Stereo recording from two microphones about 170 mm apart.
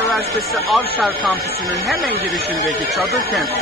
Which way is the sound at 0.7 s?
Centre (ahead or behind).